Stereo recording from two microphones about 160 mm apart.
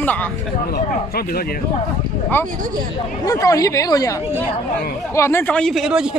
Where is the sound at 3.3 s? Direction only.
20° left (ahead or behind).